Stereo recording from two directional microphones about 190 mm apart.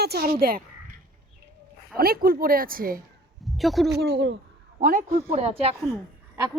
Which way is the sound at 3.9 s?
60° right (ahead or behind).